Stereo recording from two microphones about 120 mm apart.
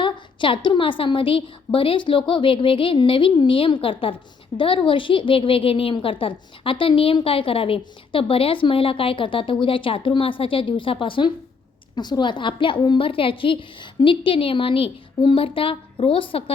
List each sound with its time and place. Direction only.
0.0 s a woman's voice: 45° left (ahead or behind)